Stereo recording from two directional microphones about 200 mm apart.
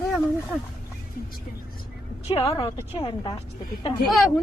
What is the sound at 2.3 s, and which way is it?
Speech, 30° left (ahead or behind).